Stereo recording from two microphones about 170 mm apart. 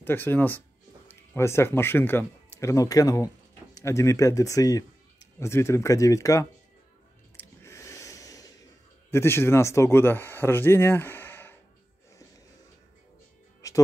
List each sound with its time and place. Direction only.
0.0 s speech: 10° left (ahead or behind)
7.3 s a sound: 15° left (ahead or behind)
9.1 s speech: 15° left (ahead or behind)
13.6 s music: 20° left (ahead or behind)